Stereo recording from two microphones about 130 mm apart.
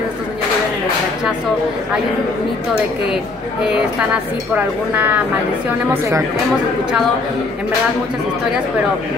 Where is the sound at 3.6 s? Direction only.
10° right (ahead or behind).